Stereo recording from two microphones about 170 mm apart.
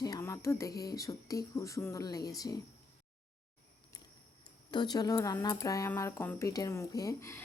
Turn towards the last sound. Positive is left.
turn(degrees=15)  # may be behind; listen again after turning